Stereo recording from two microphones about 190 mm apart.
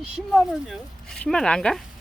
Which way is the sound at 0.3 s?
Centre (ahead or behind).